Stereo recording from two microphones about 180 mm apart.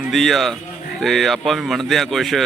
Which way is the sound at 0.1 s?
Centre (ahead or behind).